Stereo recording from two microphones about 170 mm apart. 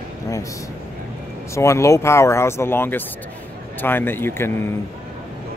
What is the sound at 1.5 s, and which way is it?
Speech, 15° left (ahead or behind).